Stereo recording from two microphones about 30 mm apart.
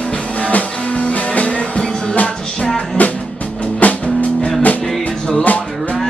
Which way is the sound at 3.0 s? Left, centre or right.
Left.